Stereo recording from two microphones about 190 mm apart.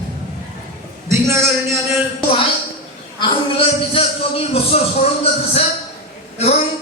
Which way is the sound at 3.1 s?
30° left (ahead or behind).